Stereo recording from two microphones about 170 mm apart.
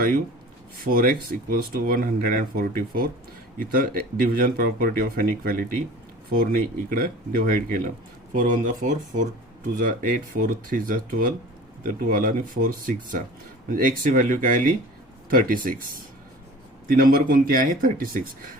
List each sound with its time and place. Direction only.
0.9 s speech: 55° right (ahead or behind)
16.9 s speech: 55° right (ahead or behind)